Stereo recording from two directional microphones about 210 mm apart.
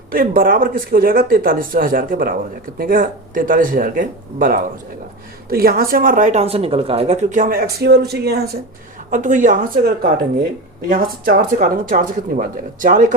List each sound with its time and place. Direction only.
0.1 s speech: 45° right (ahead or behind)
9.0 s speech: 35° right (ahead or behind)